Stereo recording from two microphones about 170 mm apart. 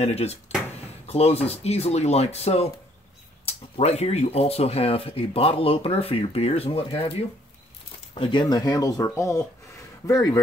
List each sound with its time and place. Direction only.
0.0 s speech: 40° left (ahead or behind); by 10.4 s 20° left (ahead or behind)